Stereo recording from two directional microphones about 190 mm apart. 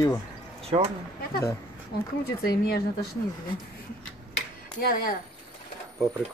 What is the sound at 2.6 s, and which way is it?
Speech, 55° left (ahead or behind).